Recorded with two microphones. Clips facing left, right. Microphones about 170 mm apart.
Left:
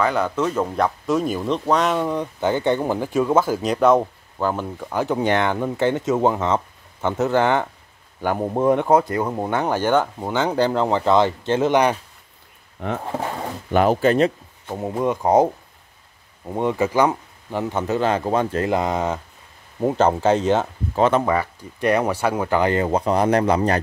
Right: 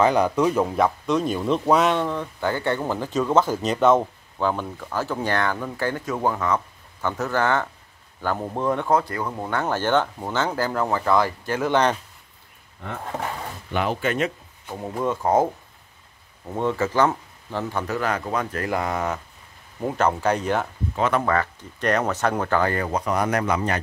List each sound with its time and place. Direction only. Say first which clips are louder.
0.0 s speech: right 2 dB; 15° right (ahead or behind)
2.0 s speech: left 3 dB; 15° left (ahead or behind)
13.7 s speech: left 8 dB; 40° left (ahead or behind)
14.7 s speech: left 4 dB; 20° left (ahead or behind)
21.2 s speech: left 2 dB; 10° left (ahead or behind); by 23.8 s 35° left (ahead or behind)